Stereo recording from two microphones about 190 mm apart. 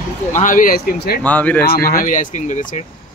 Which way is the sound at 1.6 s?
50° left (ahead or behind).